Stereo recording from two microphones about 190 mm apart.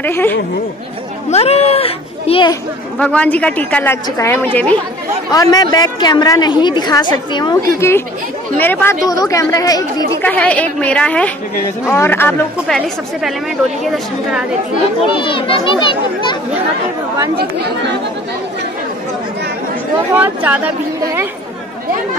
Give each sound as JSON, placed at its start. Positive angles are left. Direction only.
{"t": 0.0, "sound": "a woman's voice", "side_deg": 10}
{"t": 1.3, "sound": "speech", "side_deg": 30}
{"t": 3.0, "sound": "a woman's voice", "side_deg": 5}
{"t": 5.3, "sound": "a woman's voice", "side_deg": 20}
{"t": 10.2, "sound": "a woman's voice", "side_deg": 5}
{"t": 15.0, "sound": "a woman's voice", "side_deg": 25}
{"t": 20.2, "sound": "speech", "side_deg": -10}